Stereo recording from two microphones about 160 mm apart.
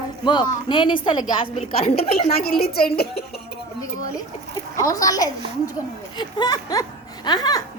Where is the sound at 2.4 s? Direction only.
70° left (ahead or behind).